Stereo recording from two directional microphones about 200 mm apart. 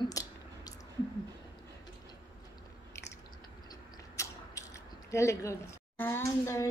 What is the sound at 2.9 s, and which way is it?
Chewing, 15° left (ahead or behind).